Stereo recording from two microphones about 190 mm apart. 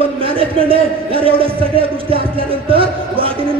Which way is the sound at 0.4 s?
30° right (ahead or behind).